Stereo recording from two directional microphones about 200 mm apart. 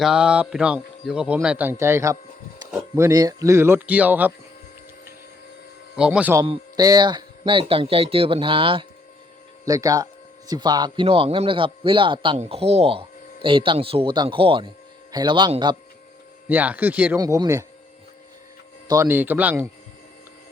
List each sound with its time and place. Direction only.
0.0 s speech: 5° right (ahead or behind)
6.0 s speech: 5° right (ahead or behind)
6.4 s speech: 20° right (ahead or behind)
16.5 s speech: 10° right (ahead or behind)
18.9 s speech: 15° right (ahead or behind)